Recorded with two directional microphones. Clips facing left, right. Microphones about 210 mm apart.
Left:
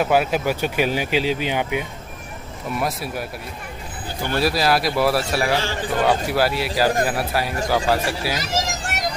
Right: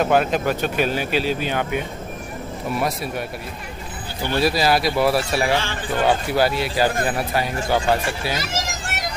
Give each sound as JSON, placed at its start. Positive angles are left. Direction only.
{"t": 0.0, "sound": "speech", "side_deg": 5}
{"t": 2.7, "sound": "speech", "side_deg": 0}
{"t": 4.4, "sound": "speech", "side_deg": 0}
{"t": 8.4, "sound": "a sound", "side_deg": 45}